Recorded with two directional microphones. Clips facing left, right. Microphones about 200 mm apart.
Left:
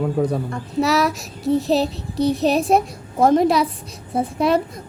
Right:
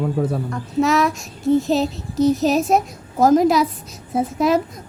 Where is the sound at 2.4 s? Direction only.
Centre (ahead or behind).